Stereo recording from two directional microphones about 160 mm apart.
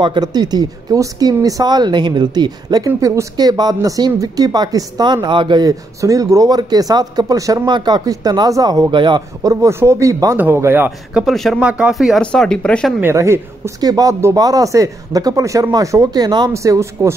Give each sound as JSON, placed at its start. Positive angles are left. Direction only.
{"t": 0.0, "sound": "speech", "side_deg": -25}
{"t": 11.2, "sound": "speech", "side_deg": 0}
{"t": 13.0, "sound": "speech", "side_deg": -15}